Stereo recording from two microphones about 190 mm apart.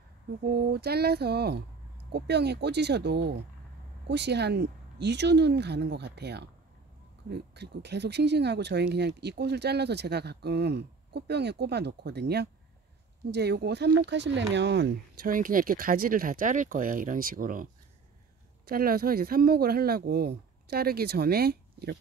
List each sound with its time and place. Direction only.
0.5 s speech: 55° right (ahead or behind)
15.3 s speech: 45° right (ahead or behind)
18.7 s speech: 50° right (ahead or behind)